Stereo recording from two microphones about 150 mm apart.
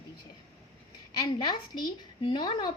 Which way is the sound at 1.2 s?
30° left (ahead or behind).